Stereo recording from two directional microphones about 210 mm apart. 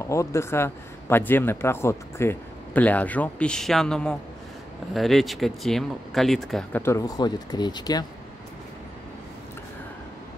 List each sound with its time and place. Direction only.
0.0 s a man's voice: 15° left (ahead or behind)
6.8 s speech: 15° left (ahead or behind)